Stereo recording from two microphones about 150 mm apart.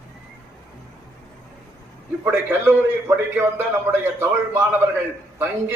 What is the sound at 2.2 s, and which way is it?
A man's voice, 15° right (ahead or behind).